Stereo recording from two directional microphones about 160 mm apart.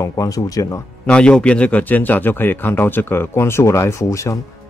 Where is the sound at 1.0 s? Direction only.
5° left (ahead or behind).